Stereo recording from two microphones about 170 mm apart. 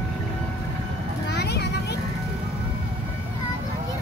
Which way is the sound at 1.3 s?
80° left.